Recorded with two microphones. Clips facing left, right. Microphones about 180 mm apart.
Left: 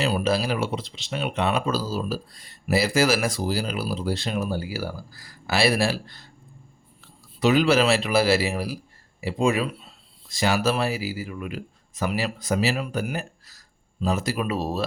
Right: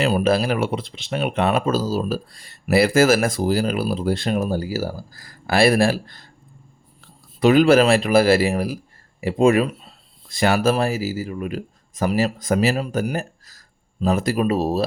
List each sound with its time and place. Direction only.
0.0 s speech: 55° right (ahead or behind)
2.3 s speech: 75° right (ahead or behind); by 14.8 s 40° right (ahead or behind)